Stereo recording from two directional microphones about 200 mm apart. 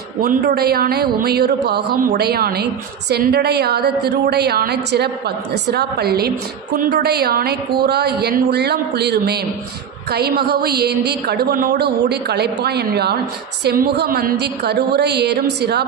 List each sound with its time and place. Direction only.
0.2 s a woman's voice: 45° right (ahead or behind)